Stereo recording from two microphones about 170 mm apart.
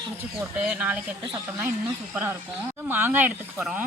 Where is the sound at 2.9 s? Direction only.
10° right (ahead or behind).